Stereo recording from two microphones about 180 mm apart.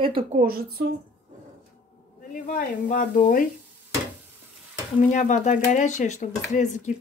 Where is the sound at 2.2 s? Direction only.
50° left (ahead or behind).